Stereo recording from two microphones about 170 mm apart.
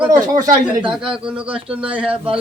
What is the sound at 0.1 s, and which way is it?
Speech, 50° right (ahead or behind).